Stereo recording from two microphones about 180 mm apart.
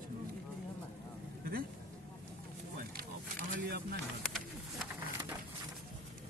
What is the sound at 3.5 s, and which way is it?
Speech, 60° right (ahead or behind).